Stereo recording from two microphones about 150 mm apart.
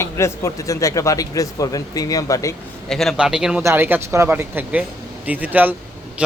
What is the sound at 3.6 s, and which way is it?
A man's voice, 15° right (ahead or behind).